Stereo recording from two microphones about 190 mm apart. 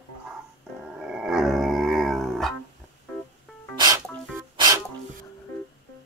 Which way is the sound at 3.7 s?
20° right (ahead or behind).